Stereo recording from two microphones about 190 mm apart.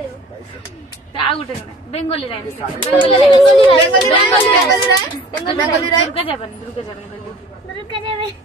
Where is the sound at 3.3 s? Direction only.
25° left (ahead or behind).